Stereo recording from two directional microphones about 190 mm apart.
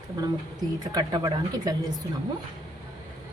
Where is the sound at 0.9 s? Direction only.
20° right (ahead or behind).